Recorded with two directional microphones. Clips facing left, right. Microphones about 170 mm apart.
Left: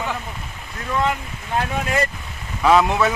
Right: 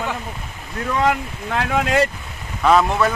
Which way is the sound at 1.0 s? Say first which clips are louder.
Right 4 dB; 80° right.